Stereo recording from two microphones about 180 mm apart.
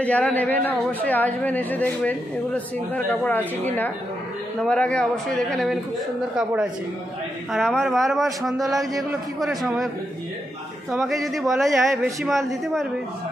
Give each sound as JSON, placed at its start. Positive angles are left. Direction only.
{"t": 0.0, "sound": "speech", "side_deg": 10}
{"t": 8.5, "sound": "a man's voice", "side_deg": -20}
{"t": 8.9, "sound": "speech", "side_deg": 0}
{"t": 11.0, "sound": "speech", "side_deg": 0}